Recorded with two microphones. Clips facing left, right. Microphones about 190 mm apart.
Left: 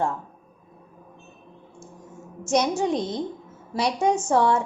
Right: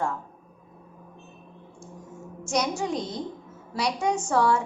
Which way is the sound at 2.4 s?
20° left (ahead or behind).